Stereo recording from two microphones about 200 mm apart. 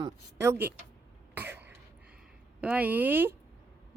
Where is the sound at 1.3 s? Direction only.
10° right (ahead or behind).